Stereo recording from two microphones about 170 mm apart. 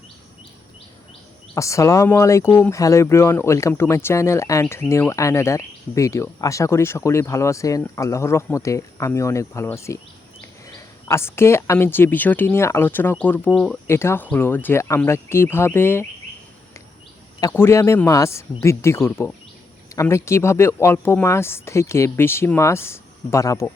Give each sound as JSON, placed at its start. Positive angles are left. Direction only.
{"t": 1.5, "sound": "speech", "side_deg": 20}
{"t": 17.5, "sound": "speech", "side_deg": 15}